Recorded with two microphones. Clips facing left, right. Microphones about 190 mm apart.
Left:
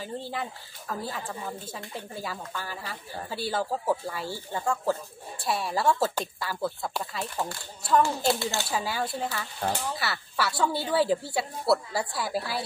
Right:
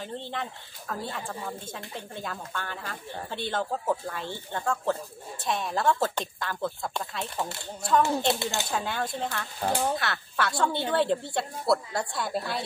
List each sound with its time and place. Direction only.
0.0 s speech: 5° left (ahead or behind)
8.4 s speech: 15° right (ahead or behind)
8.6 s speech: 5° left (ahead or behind)